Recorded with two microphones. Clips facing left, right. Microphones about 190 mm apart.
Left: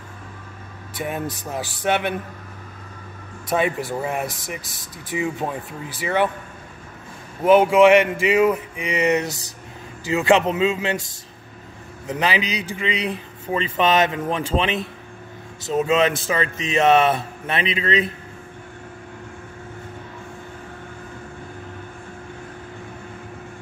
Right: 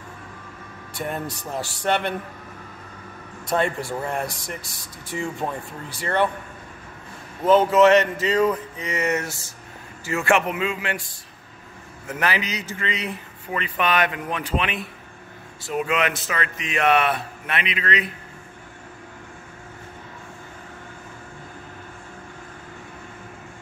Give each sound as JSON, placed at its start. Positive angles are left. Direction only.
{"t": 0.9, "sound": "speech", "side_deg": 5}
{"t": 3.4, "sound": "speech", "side_deg": 5}
{"t": 7.4, "sound": "speech", "side_deg": 10}
{"t": 12.1, "sound": "speech", "side_deg": 20}
{"t": 13.5, "sound": "speech", "side_deg": 25}